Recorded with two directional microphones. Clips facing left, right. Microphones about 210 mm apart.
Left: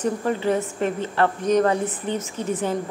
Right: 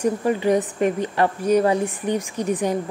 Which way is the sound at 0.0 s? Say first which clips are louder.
Right 3 dB; 15° right (ahead or behind).